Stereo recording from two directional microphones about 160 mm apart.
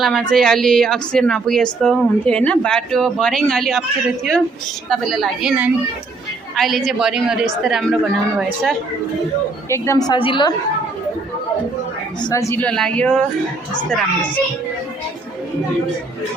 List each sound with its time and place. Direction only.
0.0 s speech: 5° left (ahead or behind)
9.6 s a woman's voice: 15° left (ahead or behind); by 10.5 s 30° left (ahead or behind)
12.2 s a woman's voice: 20° left (ahead or behind)
12.6 s speech: 5° left (ahead or behind)